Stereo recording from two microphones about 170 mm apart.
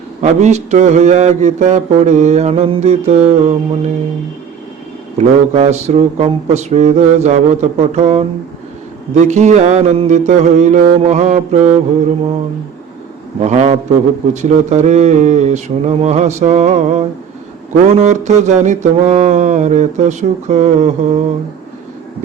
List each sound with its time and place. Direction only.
0.2 s mantra: 45° right (ahead or behind)
5.1 s speech: 40° right (ahead or behind)
9.1 s mantra: 45° right (ahead or behind)
13.4 s speech: 40° right (ahead or behind)
17.7 s mantra: 45° right (ahead or behind)